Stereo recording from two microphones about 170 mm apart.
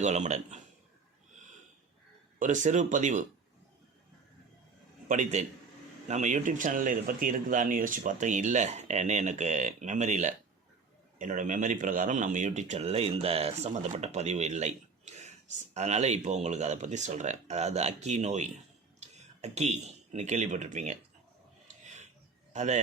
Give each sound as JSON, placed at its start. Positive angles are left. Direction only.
{"t": 0.0, "sound": "speech", "side_deg": -45}
{"t": 2.4, "sound": "speech", "side_deg": -45}
{"t": 5.0, "sound": "speech", "side_deg": -45}
{"t": 22.5, "sound": "speech", "side_deg": -45}